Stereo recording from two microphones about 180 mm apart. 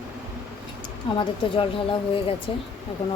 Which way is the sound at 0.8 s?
30° left (ahead or behind).